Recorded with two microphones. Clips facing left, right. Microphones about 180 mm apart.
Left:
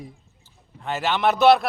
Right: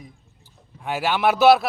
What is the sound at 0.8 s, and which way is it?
Speech, 10° right (ahead or behind).